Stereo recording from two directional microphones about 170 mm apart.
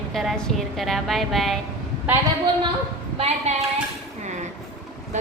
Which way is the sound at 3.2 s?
35° right (ahead or behind).